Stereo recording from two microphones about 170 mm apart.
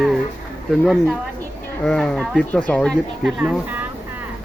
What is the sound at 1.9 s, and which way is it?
Speech, 5° left (ahead or behind).